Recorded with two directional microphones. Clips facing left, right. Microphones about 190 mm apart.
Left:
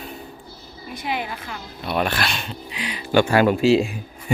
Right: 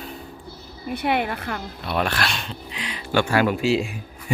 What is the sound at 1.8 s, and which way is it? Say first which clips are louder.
Speech: left 2 dB; centre (ahead or behind).